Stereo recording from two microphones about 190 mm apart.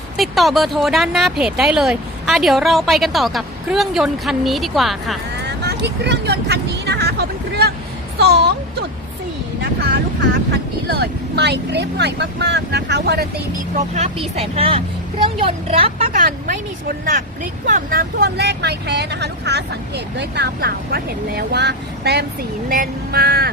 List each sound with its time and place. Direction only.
0.2 s speech: centre (ahead or behind)
5.5 s speech: 60° right (ahead or behind)
13.7 s a woman's voice: 35° right (ahead or behind)
17.7 s speech: 50° right (ahead or behind)